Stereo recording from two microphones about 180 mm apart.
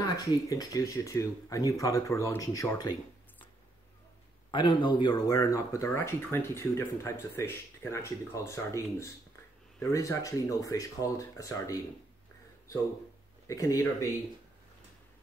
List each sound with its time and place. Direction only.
0.0 s speech: 20° left (ahead or behind)
4.5 s speech: 25° left (ahead or behind)
13.5 s speech: 20° left (ahead or behind)